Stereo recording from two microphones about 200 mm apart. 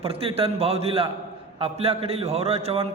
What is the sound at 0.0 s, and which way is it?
A man's voice, 30° right (ahead or behind).